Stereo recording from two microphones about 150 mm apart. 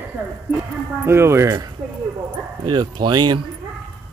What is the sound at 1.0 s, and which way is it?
Speech, 15° right (ahead or behind).